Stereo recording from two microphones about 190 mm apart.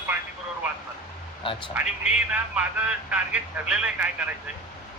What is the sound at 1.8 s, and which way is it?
A man's voice, 5° right (ahead or behind).